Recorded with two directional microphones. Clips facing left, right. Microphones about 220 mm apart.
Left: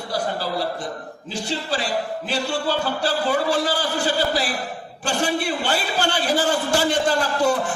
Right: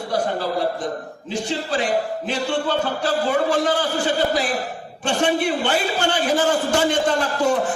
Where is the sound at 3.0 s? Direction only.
35° left (ahead or behind).